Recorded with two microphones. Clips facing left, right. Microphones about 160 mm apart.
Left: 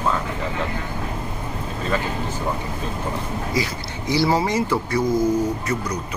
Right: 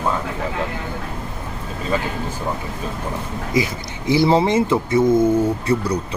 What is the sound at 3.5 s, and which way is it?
Speech, 20° right (ahead or behind).